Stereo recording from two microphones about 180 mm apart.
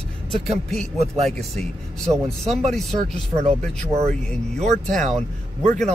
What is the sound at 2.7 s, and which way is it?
Speech, centre (ahead or behind).